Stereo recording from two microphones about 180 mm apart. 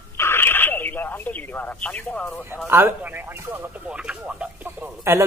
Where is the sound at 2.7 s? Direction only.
10° right (ahead or behind).